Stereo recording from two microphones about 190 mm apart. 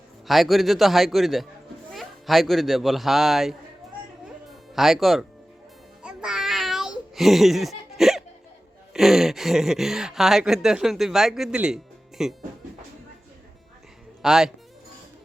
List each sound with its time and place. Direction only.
0.3 s speech: centre (ahead or behind)
4.7 s speech: centre (ahead or behind)
6.0 s music: 5° right (ahead or behind)
8.9 s speech: centre (ahead or behind)
14.2 s speech: 5° right (ahead or behind)